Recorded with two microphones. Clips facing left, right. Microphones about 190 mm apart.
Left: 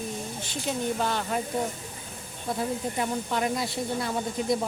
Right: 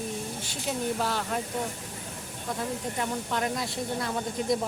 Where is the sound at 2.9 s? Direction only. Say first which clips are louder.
Left 1 dB; 5° left (ahead or behind).